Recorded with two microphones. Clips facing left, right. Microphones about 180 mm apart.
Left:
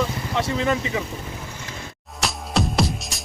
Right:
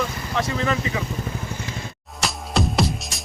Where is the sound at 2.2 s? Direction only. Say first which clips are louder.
Even; centre (ahead or behind).